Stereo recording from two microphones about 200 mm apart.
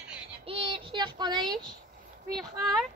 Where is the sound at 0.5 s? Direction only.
25° right (ahead or behind).